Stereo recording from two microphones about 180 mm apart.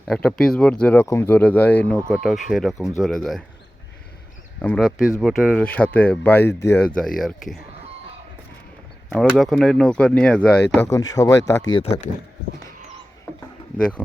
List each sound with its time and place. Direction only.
0.1 s speech: 5° left (ahead or behind)
2.1 s speech: 5° right (ahead or behind)
4.6 s speech: 5° left (ahead or behind)
9.0 s speech: centre (ahead or behind)
11.1 s speech: 20° left (ahead or behind)
11.8 s speech: 35° left (ahead or behind)
13.7 s speech: 5° left (ahead or behind)